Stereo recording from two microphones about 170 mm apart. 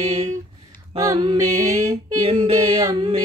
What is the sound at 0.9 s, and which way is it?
A capella, 20° right (ahead or behind).